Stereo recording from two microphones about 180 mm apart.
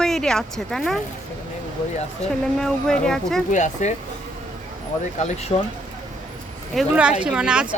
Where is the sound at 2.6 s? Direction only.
5° left (ahead or behind).